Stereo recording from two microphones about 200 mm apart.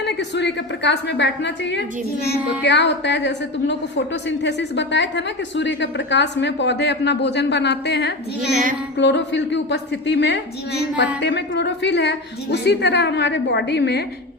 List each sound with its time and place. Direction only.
0.0 s a woman's voice: 60° left (ahead or behind)